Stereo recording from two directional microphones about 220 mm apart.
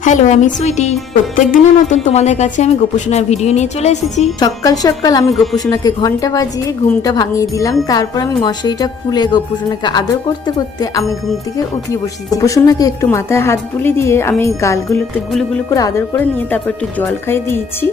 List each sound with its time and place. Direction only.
0.0 s a woman's voice: 35° left (ahead or behind)
4.4 s speech: 15° left (ahead or behind)
15.3 s speech: centre (ahead or behind)
15.7 s speech: 15° left (ahead or behind)